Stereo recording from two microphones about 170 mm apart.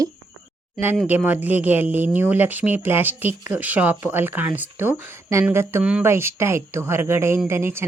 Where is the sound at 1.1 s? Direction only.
10° right (ahead or behind).